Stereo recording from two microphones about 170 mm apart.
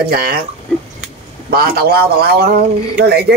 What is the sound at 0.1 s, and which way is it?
Speech, 65° right (ahead or behind).